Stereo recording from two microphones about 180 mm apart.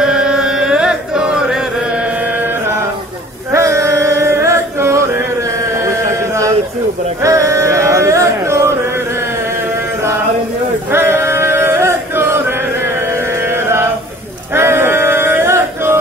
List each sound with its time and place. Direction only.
0.0 s chant: 5° right (ahead or behind)
3.5 s music: 15° right (ahead or behind)
5.9 s a sound: 15° right (ahead or behind)
7.2 s music: 15° right (ahead or behind)
10.9 s male singing: 15° right (ahead or behind)
14.5 s male singing: 15° right (ahead or behind)